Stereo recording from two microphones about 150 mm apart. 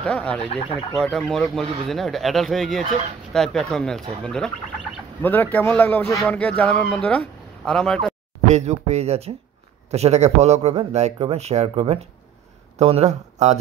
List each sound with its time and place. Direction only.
0.0 s speech: 5° left (ahead or behind)
8.5 s speech: 50° right (ahead or behind)